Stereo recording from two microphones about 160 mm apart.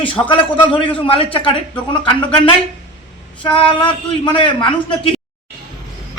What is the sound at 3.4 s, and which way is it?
A man's voice, 35° left (ahead or behind).